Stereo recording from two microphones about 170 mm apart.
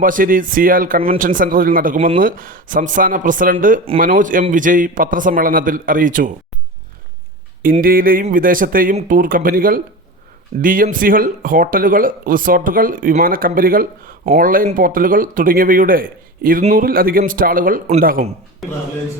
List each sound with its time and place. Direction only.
0.0 s a man's voice: 55° right (ahead or behind)
7.6 s speech: 55° right (ahead or behind)